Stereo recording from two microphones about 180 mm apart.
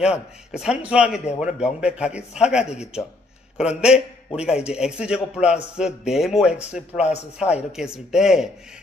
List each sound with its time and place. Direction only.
0.5 s a man's voice: 5° right (ahead or behind)
7.0 s speech: 40° left (ahead or behind)
7.3 s a man's voice: 5° right (ahead or behind)